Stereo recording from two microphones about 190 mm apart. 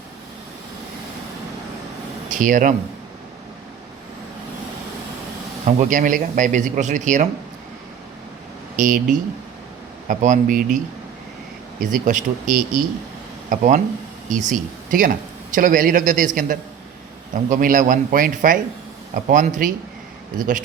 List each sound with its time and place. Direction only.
2.3 s a man's voice: 45° right (ahead or behind)
5.6 s speech: 40° right (ahead or behind)
8.7 s a man's voice: 45° right (ahead or behind)
11.8 s a man's voice: 45° right (ahead or behind)